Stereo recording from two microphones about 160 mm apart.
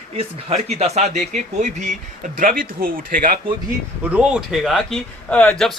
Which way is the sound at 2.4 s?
60° right (ahead or behind).